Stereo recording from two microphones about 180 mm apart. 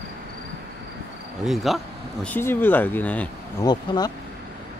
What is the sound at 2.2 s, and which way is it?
Speech, 10° left (ahead or behind).